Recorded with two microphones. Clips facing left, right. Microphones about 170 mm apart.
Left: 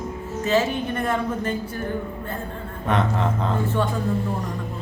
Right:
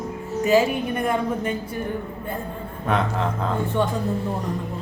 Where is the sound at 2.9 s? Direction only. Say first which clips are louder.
Left 1 dB; centre (ahead or behind).